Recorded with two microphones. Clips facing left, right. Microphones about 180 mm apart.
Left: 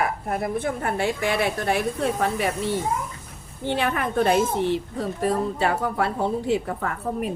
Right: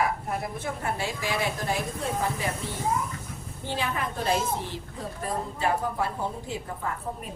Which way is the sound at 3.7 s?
65° left (ahead or behind).